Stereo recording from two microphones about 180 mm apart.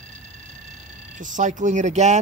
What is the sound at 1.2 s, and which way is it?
Speech, 45° right (ahead or behind).